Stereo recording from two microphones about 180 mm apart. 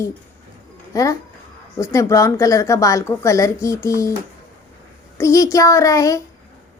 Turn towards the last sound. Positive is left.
turn(degrees=20)  # may be behind; listen again after turning